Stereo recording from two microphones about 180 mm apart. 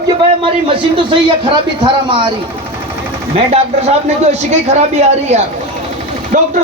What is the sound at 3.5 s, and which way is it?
Speech, 35° right (ahead or behind).